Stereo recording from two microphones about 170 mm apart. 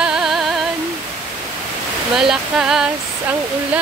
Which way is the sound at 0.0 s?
5° right (ahead or behind).